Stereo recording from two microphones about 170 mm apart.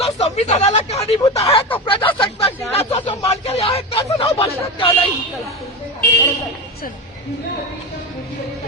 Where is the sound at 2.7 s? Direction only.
35° left (ahead or behind).